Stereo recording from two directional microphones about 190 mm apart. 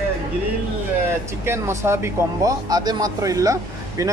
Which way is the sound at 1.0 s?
15° right (ahead or behind).